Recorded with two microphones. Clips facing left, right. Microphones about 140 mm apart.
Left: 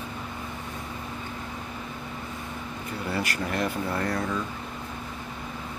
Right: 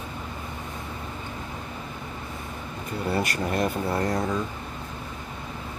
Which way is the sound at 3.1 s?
25° right (ahead or behind).